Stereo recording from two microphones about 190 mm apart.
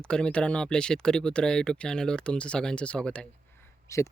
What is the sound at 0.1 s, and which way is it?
Speech, 5° left (ahead or behind).